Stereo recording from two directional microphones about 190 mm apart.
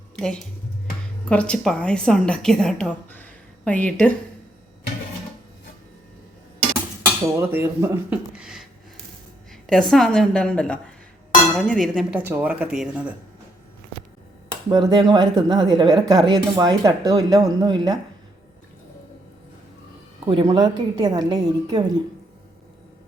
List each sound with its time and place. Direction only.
1.3 s a woman's voice: 5° left (ahead or behind)
7.0 s a woman's voice: 10° right (ahead or behind)
12.1 s speech: 10° right (ahead or behind)
14.7 s speech: 20° right (ahead or behind)
20.2 s speech: 25° right (ahead or behind)